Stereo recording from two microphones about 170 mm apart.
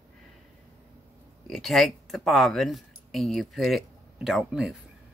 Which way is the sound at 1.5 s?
Centre (ahead or behind).